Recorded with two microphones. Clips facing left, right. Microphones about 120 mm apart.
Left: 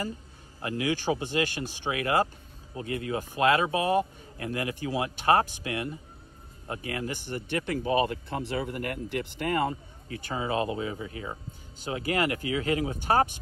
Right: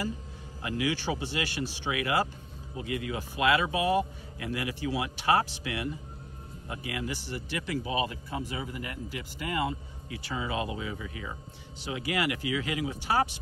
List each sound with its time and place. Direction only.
0.6 s speech: 40° left (ahead or behind)
11.8 s speech: 45° left (ahead or behind)